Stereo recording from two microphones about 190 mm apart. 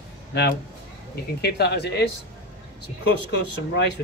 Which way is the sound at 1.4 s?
60° left (ahead or behind).